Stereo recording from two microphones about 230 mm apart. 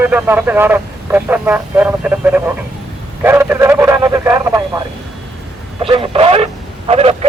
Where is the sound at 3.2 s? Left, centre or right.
Centre.